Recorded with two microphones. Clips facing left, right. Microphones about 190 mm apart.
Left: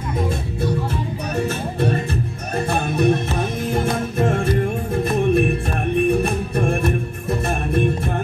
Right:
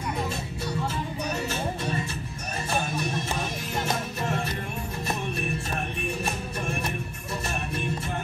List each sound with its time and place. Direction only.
1.3 s music: 55° left (ahead or behind)